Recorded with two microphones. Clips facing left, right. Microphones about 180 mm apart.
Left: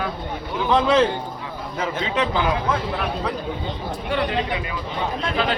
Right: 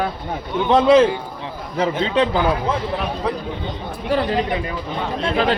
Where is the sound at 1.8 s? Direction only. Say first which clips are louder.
Right 6 dB; 35° right (ahead or behind).